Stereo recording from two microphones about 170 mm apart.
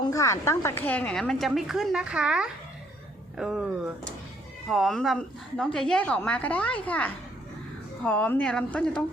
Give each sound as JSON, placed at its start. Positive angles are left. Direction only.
{"t": 0.1, "sound": "a woman's voice", "side_deg": 15}